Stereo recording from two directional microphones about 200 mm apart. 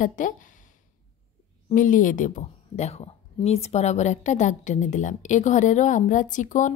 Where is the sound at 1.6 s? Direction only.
40° left (ahead or behind).